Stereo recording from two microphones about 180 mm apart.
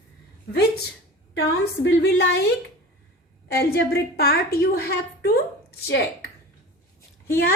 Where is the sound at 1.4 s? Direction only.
80° left.